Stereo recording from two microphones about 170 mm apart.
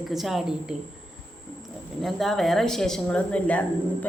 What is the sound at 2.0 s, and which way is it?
Speech, centre (ahead or behind).